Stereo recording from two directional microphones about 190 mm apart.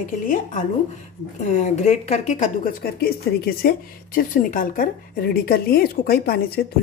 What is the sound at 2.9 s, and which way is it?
Speech, 55° left (ahead or behind).